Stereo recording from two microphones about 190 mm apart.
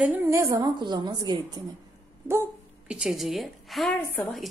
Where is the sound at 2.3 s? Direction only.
10° right (ahead or behind).